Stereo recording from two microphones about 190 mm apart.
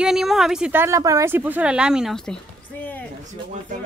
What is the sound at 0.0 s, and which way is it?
Speech, centre (ahead or behind).